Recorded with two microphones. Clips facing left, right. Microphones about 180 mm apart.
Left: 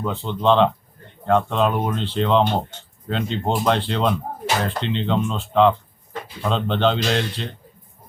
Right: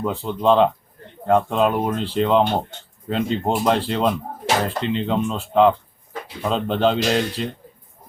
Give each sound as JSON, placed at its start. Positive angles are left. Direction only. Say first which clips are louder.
{"t": 0.0, "sound": "speech", "louder": "right 1 dB", "side_deg": -5}